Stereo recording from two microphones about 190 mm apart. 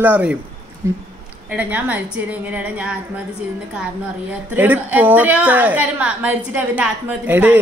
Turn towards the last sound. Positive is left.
turn(degrees=-10)  # may be behind; listen again after turning